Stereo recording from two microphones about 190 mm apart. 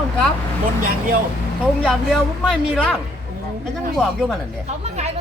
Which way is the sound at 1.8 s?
5° left (ahead or behind).